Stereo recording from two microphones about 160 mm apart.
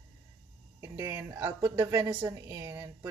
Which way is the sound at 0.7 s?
20° right (ahead or behind).